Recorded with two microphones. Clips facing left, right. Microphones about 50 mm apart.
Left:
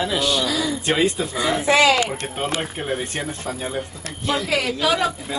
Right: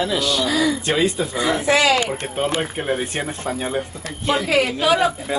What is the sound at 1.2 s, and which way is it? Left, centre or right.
Speech, centre.